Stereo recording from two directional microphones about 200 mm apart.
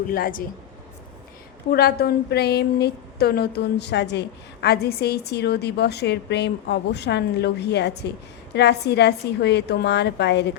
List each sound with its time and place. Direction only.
0.1 s a woman's voice: 45° left (ahead or behind)
1.7 s a woman's voice: 50° left (ahead or behind)